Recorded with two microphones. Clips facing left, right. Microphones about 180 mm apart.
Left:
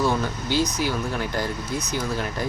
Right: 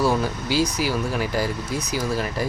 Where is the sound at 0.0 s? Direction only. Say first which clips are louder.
Right 2 dB; 5° right (ahead or behind).